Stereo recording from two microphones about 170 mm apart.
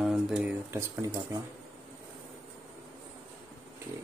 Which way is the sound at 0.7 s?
20° right (ahead or behind).